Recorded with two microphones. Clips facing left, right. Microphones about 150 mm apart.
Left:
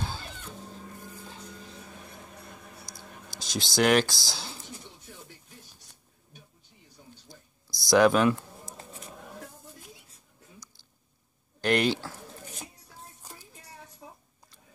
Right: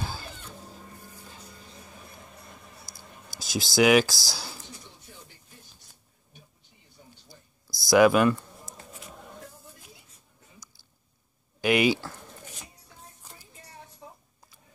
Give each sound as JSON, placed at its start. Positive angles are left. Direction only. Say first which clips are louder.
{"t": 2.9, "sound": "a sound", "louder": "left 3 dB", "side_deg": 20}
{"t": 3.3, "sound": "speech", "louder": "right 4 dB", "side_deg": -5}
{"t": 7.9, "sound": "speech", "louder": "right 2 dB", "side_deg": -5}
{"t": 11.6, "sound": "speech", "louder": "right 2 dB", "side_deg": -5}